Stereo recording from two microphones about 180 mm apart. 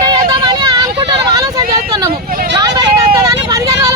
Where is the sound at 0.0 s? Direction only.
25° right (ahead or behind).